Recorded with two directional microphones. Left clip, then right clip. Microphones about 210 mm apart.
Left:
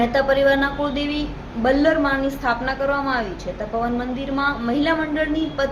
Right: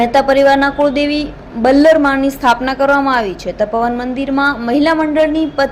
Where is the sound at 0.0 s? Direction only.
40° right (ahead or behind).